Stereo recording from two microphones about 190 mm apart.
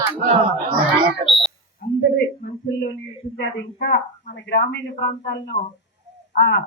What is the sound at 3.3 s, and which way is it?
A woman's voice, 60° left (ahead or behind).